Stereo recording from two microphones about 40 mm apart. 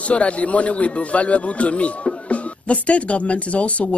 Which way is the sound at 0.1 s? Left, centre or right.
Left.